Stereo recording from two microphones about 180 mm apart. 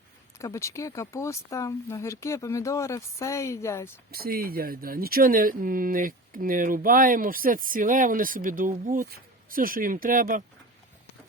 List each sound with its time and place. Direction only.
0.3 s speech: 15° left (ahead or behind)
4.1 s speech: 55° right (ahead or behind)